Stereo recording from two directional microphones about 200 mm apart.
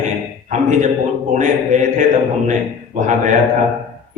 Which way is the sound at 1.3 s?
35° right (ahead or behind).